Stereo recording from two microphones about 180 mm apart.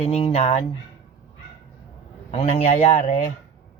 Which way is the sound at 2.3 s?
35° left (ahead or behind).